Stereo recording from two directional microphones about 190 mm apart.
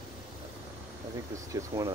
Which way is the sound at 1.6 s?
15° right (ahead or behind).